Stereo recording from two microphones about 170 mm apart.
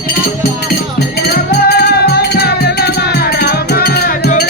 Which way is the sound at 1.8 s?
70° left (ahead or behind).